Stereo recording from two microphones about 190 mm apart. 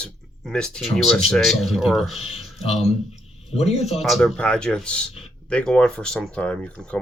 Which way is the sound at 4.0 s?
Centre (ahead or behind).